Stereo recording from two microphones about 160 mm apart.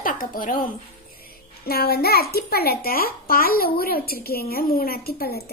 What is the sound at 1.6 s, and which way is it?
A child's voice, 75° left (ahead or behind).